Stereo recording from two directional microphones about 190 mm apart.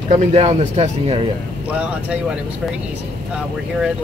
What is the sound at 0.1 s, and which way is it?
Speech, 35° right (ahead or behind).